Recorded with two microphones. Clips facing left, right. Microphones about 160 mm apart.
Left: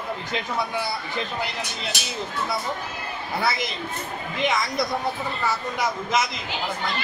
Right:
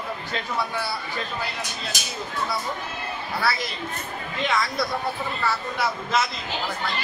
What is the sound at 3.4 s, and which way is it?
Speech, 20° left (ahead or behind).